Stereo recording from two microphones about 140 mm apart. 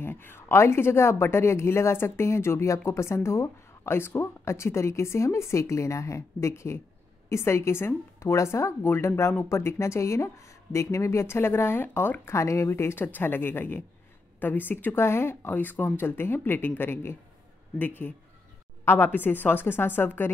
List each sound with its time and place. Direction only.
0.0 s a woman's voice: 15° left (ahead or behind)